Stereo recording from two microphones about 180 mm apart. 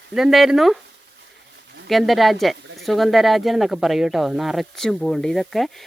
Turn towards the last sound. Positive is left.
turn(degrees=0)  # may be behind; listen again after turning